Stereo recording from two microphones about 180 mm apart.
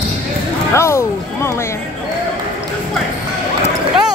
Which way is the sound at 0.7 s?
15° left (ahead or behind).